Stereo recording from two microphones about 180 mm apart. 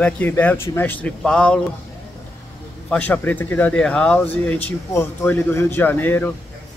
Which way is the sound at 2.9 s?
10° left (ahead or behind).